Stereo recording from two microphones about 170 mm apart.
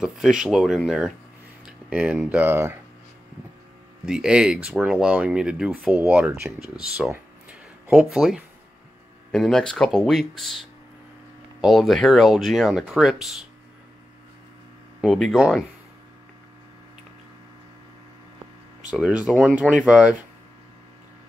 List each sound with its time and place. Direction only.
0.0 s speech: 5° right (ahead or behind)
4.0 s speech: 5° right (ahead or behind)
15.0 s speech: centre (ahead or behind)
18.9 s speech: 5° right (ahead or behind)